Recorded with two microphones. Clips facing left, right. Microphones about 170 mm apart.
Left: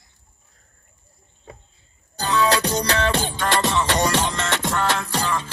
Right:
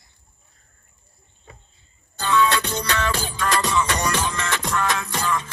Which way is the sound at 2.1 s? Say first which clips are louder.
Even; 40° left (ahead or behind).